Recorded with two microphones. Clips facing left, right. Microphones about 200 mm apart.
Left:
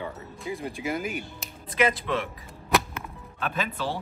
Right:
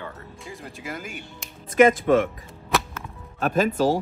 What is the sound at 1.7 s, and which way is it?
Speech, 45° right (ahead or behind).